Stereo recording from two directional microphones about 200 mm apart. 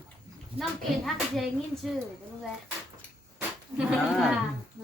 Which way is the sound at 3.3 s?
5° right (ahead or behind).